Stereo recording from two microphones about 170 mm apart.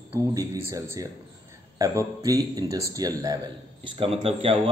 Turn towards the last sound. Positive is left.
turn(degrees=-35)  # may be behind; listen again after turning